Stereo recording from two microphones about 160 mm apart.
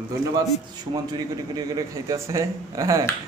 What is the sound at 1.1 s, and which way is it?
A man's voice, 25° right (ahead or behind).